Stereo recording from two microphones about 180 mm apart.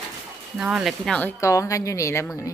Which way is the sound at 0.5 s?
5° right (ahead or behind).